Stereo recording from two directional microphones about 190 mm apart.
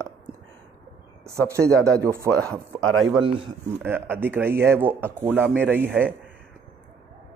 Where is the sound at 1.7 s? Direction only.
5° left (ahead or behind).